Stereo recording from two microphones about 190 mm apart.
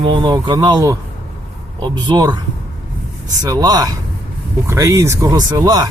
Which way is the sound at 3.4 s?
20° right (ahead or behind).